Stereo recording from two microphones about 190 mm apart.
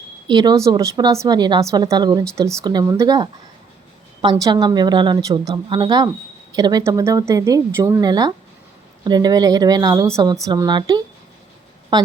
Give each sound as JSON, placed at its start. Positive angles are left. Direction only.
{"t": 0.3, "sound": "a woman's voice", "side_deg": -20}